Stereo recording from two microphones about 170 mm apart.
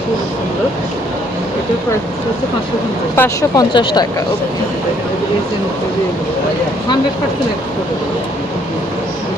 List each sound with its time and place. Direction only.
3.2 s speech: 20° left (ahead or behind)